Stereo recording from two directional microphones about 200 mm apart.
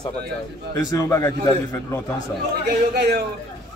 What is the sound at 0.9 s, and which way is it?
Speech, 15° left (ahead or behind).